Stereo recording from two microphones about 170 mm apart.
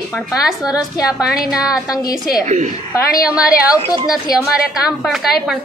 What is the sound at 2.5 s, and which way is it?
Speech, 45° right (ahead or behind).